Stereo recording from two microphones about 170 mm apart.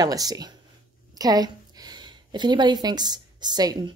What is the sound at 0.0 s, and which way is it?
A woman's voice, 20° right (ahead or behind).